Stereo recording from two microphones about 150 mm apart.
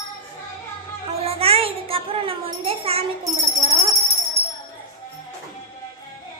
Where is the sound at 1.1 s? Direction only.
40° right (ahead or behind).